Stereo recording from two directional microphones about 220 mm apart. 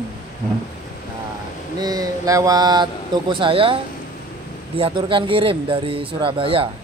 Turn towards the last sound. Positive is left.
turn(degrees=-25)  # may be behind; listen again after turning